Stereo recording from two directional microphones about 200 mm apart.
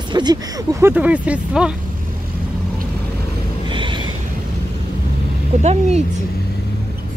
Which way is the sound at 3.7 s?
25° right (ahead or behind).